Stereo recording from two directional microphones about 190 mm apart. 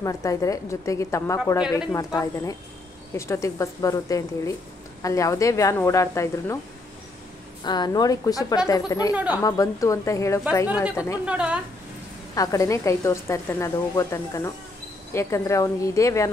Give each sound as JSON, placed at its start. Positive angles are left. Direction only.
{"t": 0.0, "sound": "speech", "side_deg": 15}
{"t": 7.6, "sound": "a woman's voice", "side_deg": 20}
{"t": 9.1, "sound": "speech", "side_deg": -10}
{"t": 9.4, "sound": "speech", "side_deg": 20}
{"t": 11.2, "sound": "speech", "side_deg": -5}
{"t": 12.4, "sound": "speech", "side_deg": 20}